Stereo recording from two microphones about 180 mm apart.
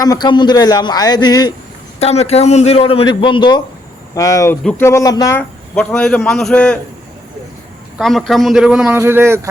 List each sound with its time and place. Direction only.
0.0 s a man's voice: 20° left (ahead or behind)
2.0 s a man's voice: 35° left (ahead or behind); by 5.4 s 20° left (ahead or behind)
5.4 s a man's voice: 5° left (ahead or behind)
7.9 s a man's voice: centre (ahead or behind)